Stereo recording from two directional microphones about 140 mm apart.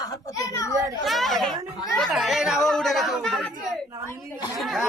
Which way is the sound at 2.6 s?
Centre (ahead or behind).